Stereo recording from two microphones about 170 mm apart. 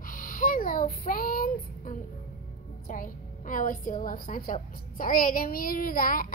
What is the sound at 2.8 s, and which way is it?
A woman's voice, 55° left (ahead or behind).